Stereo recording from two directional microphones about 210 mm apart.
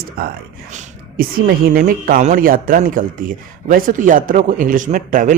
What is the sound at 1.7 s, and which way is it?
A man's voice, 40° right (ahead or behind).